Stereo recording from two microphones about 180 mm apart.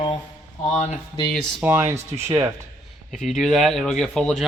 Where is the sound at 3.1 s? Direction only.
Centre (ahead or behind).